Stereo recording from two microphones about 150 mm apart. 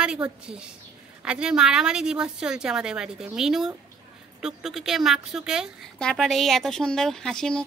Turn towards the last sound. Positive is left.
turn(degrees=5)  # may be behind; listen again after turning